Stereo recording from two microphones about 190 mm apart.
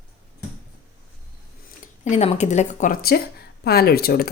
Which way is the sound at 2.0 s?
35° left (ahead or behind).